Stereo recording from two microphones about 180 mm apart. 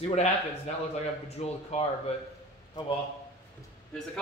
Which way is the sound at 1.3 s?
35° left (ahead or behind).